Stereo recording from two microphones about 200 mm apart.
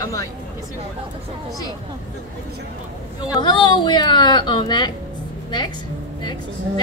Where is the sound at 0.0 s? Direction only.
15° left (ahead or behind).